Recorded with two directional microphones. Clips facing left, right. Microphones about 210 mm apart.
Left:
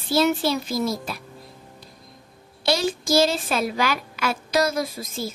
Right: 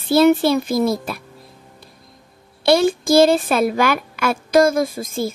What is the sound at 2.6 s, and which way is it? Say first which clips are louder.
Music: right 8 dB; 55° right (ahead or behind).